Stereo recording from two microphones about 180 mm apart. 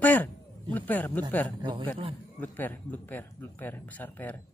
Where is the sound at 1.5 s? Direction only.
25° right (ahead or behind).